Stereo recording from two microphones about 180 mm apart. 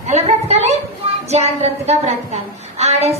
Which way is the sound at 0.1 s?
35° right (ahead or behind).